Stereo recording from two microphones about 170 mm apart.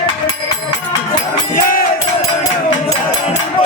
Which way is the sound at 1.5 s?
55° left (ahead or behind).